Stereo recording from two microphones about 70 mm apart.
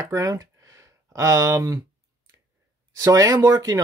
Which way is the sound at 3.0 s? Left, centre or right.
Right.